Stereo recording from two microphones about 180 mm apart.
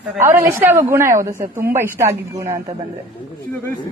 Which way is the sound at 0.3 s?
10° right (ahead or behind).